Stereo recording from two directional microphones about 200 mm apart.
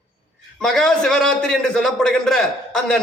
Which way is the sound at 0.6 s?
Centre (ahead or behind).